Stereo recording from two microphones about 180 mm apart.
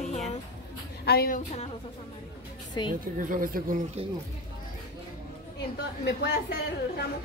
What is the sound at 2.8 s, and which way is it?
Speech, 25° left (ahead or behind).